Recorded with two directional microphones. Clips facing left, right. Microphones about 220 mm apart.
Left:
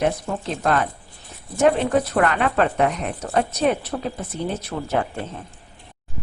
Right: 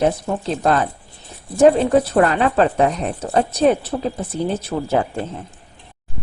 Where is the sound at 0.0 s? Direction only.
30° right (ahead or behind).